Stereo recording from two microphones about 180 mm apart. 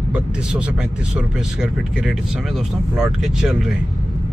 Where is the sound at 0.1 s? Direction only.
5° right (ahead or behind).